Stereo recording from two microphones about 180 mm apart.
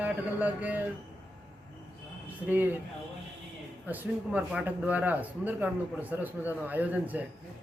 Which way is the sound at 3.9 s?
10° right (ahead or behind).